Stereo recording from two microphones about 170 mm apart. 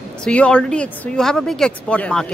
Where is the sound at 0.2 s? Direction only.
5° left (ahead or behind).